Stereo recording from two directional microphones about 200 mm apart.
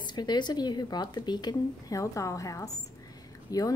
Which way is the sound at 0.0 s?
20° left (ahead or behind).